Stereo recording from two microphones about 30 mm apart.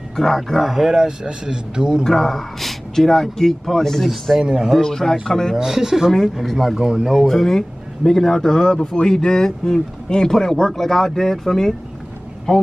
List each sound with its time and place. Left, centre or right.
0.1 s speech: centre
0.6 s speech: centre
0.9 s speech: right
2.0 s speech: centre
5.6 s speech: centre
6.4 s speech: centre
6.8 s speech: right
7.2 s speech: centre